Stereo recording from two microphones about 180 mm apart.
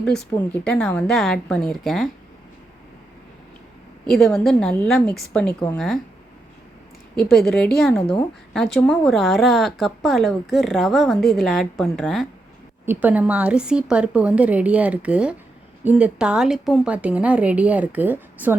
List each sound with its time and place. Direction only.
0.6 s speech: 5° left (ahead or behind)
4.0 s speech: centre (ahead or behind)
7.3 s speech: 5° left (ahead or behind)
12.8 s a woman's voice: 10° right (ahead or behind)